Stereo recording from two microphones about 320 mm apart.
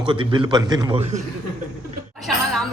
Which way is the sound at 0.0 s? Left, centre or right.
Centre.